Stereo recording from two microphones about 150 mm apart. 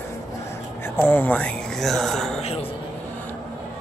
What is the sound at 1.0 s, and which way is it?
Speech, 10° left (ahead or behind).